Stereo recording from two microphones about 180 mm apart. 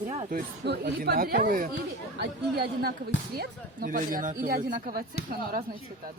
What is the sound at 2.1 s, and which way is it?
Speech, 65° right (ahead or behind).